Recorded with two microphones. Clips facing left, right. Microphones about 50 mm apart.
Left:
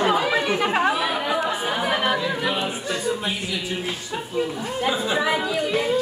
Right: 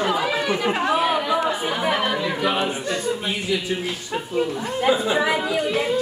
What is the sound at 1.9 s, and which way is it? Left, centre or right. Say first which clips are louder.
Speech: right 1 dB; centre.